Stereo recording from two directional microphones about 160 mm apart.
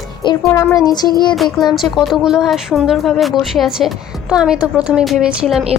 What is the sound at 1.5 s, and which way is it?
A woman's voice, centre (ahead or behind).